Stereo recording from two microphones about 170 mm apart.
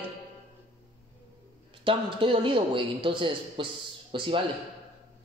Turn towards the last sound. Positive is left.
turn(degrees=-30)  # may be behind; listen again after turning